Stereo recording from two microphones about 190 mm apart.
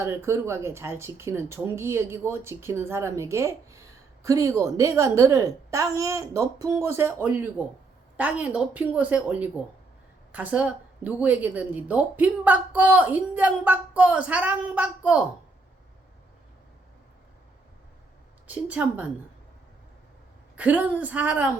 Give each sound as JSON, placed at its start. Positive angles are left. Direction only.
{"t": 0.0, "sound": "speech", "side_deg": -15}
{"t": 18.4, "sound": "speech", "side_deg": -10}
{"t": 20.6, "sound": "speech", "side_deg": -10}